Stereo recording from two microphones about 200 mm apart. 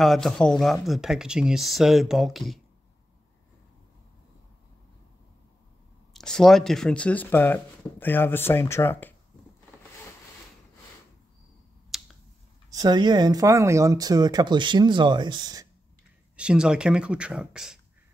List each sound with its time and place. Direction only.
0.0 s speech: centre (ahead or behind)
6.1 s speech: centre (ahead or behind)
11.9 s finger snapping: centre (ahead or behind)
12.6 s speech: 20° right (ahead or behind)
16.3 s speech: 5° right (ahead or behind)